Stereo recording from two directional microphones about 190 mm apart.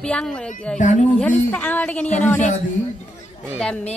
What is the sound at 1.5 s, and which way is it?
Speech, 10° left (ahead or behind).